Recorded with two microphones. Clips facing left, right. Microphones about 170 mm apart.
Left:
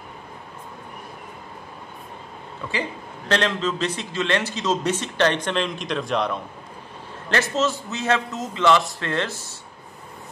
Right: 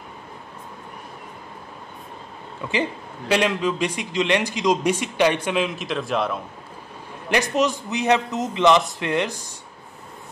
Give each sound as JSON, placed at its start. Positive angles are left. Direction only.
{"t": 2.7, "sound": "a man's voice", "side_deg": -15}
{"t": 7.2, "sound": "a man's voice", "side_deg": -15}